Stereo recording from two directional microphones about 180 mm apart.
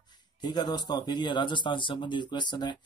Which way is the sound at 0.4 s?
25° left (ahead or behind).